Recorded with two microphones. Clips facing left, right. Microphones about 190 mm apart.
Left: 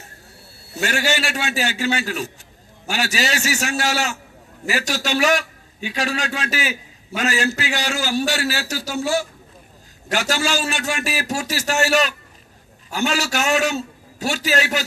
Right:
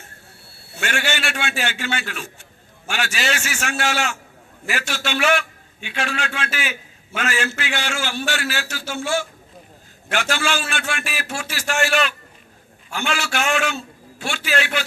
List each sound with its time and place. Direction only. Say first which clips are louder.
0.0 s a man's voice: left 2 dB; 40° left (ahead or behind)